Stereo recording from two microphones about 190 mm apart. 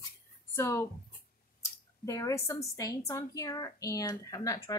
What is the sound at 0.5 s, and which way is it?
Speech, 15° left (ahead or behind).